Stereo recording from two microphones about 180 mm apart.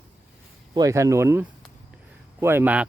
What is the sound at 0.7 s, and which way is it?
Speech, 20° right (ahead or behind).